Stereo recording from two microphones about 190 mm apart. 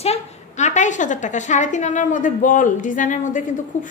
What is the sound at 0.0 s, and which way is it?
A woman's voice, 35° left (ahead or behind).